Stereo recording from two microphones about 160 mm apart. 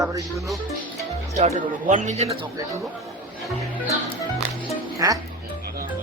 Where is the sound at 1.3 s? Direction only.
50° right (ahead or behind).